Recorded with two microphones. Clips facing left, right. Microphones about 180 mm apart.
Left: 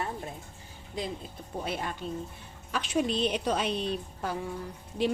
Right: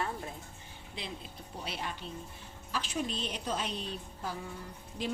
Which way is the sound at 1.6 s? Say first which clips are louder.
Left 5 dB; 50° left (ahead or behind).